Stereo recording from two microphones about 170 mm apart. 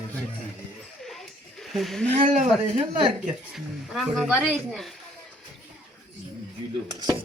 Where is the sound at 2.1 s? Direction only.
45° right (ahead or behind).